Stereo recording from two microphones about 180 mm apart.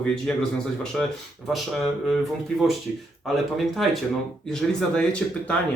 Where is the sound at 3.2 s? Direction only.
Centre (ahead or behind).